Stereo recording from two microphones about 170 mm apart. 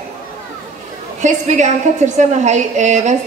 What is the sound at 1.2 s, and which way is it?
A woman's voice, 45° right (ahead or behind).